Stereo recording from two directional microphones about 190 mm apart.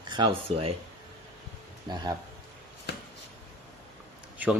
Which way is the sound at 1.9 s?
25° right (ahead or behind).